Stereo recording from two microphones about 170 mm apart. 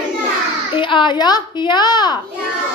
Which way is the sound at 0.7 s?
30° left (ahead or behind).